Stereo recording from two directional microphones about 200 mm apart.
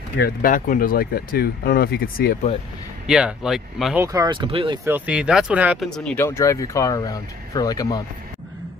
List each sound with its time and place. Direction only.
0.2 s speech: 45° left (ahead or behind)
3.1 s speech: 5° right (ahead or behind)
4.0 s speech: 15° right (ahead or behind)
4.8 s speech: 10° right (ahead or behind)
5.9 s speech: 5° left (ahead or behind)